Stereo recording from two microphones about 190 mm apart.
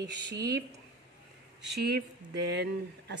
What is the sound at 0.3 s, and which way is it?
Speech, 60° right (ahead or behind).